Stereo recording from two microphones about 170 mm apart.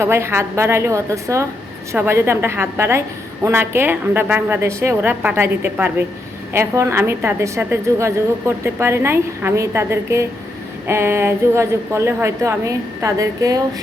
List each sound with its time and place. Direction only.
0.0 s a woman's voice: 15° right (ahead or behind)